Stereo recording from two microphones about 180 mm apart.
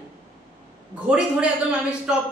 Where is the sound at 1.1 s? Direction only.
5° right (ahead or behind).